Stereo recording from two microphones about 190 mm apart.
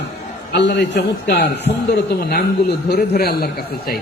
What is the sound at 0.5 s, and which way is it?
A man's voice, 60° left (ahead or behind).